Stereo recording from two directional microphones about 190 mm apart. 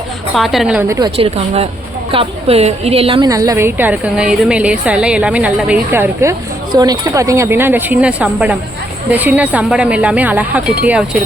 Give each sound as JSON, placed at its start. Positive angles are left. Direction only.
{"t": 0.3, "sound": "a woman's voice", "side_deg": 0}
{"t": 0.9, "sound": "a woman's voice", "side_deg": -20}
{"t": 3.2, "sound": "a woman's voice", "side_deg": -20}